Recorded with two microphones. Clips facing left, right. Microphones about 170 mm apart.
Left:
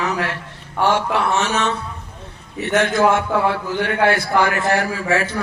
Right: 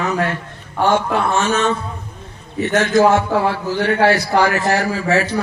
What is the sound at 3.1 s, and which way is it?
A man's voice, 55° left (ahead or behind).